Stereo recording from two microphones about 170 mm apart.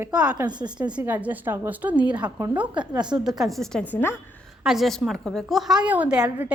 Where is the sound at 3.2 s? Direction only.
Centre (ahead or behind).